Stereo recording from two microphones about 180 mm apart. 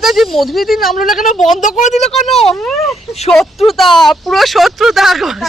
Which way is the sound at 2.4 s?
Centre (ahead or behind).